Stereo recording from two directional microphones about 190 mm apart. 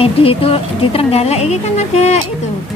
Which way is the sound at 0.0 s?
30° left (ahead or behind).